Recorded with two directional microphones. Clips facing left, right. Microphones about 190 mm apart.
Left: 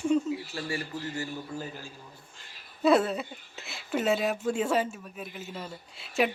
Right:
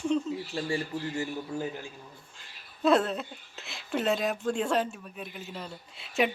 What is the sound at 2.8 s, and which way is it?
Speech, 5° left (ahead or behind).